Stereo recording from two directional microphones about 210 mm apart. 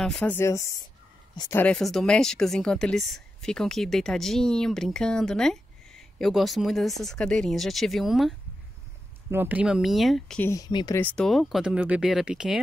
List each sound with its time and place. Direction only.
0.0 s speech: 5° left (ahead or behind)
1.6 s speech: 5° left (ahead or behind)
10.5 s speech: 20° left (ahead or behind)
11.0 s speech: 5° left (ahead or behind)